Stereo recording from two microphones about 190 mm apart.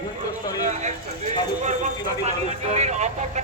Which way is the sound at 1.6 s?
40° right (ahead or behind).